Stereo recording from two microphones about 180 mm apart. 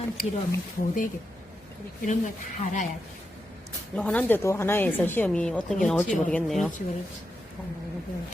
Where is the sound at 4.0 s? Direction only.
5° left (ahead or behind).